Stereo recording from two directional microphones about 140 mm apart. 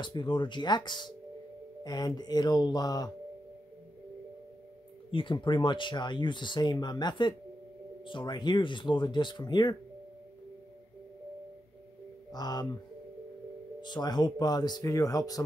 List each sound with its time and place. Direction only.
0.0 s speech: 35° left (ahead or behind)
5.1 s speech: 35° left (ahead or behind)
12.3 s speech: 30° left (ahead or behind)
13.7 s speech: 30° left (ahead or behind)